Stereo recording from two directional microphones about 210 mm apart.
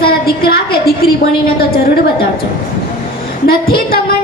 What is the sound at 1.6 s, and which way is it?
Speech, 45° left (ahead or behind).